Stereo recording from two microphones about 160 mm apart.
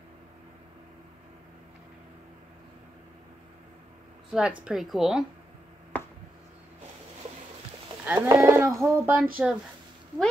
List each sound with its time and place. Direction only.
4.3 s a woman's voice: 5° right (ahead or behind)
8.0 s a sound: 15° right (ahead or behind)
9.4 s a woman's voice: 5° right (ahead or behind)